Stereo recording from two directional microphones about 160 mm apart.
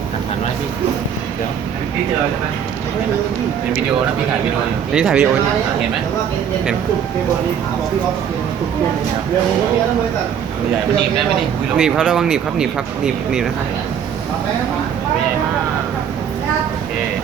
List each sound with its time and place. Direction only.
4.9 s speech: 5° right (ahead or behind)
11.8 s speech: 5° right (ahead or behind)